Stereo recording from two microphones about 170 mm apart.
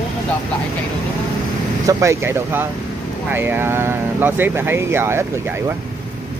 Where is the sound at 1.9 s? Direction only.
15° right (ahead or behind).